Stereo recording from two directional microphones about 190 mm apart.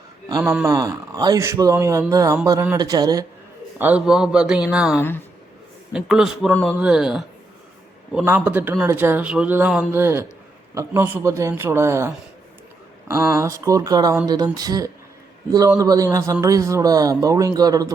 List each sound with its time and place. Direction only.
0.3 s speech: 20° right (ahead or behind)
3.8 s a man's voice: 5° right (ahead or behind)
4.9 s a man's voice: 10° left (ahead or behind)
5.9 s a man's voice: centre (ahead or behind)
6.7 s a man's voice: 5° right (ahead or behind)